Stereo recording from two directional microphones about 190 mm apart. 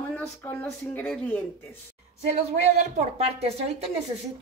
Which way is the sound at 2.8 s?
35° right (ahead or behind).